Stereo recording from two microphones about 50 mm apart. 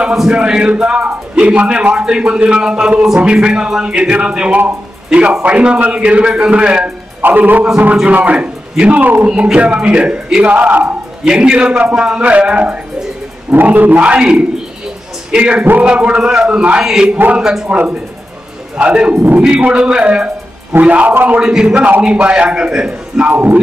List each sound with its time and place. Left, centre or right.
0.0 s a sound: centre
0.4 s speech: right
7.2 s a man's voice: right
11.2 s a man's voice: centre
13.5 s a man's voice: right; by 17.6 s centre
17.6 s a man's voice: right
21.1 s a man's voice: right
21.4 s speech: centre
23.3 s a man's voice: right